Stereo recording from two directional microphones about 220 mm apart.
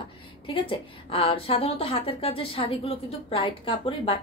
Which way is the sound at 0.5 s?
25° left (ahead or behind).